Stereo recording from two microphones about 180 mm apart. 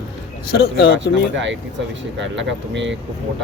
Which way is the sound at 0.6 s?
60° left (ahead or behind).